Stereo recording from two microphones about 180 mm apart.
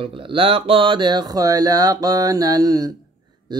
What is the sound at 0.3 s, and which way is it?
Speech, 30° right (ahead or behind).